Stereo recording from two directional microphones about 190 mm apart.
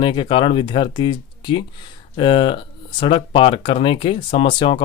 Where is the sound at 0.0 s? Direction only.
25° left (ahead or behind).